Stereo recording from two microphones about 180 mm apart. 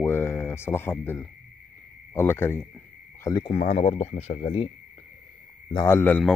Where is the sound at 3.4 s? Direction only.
35° left (ahead or behind).